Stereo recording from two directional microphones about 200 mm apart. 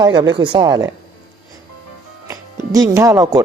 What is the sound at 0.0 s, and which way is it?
Speech, 20° right (ahead or behind).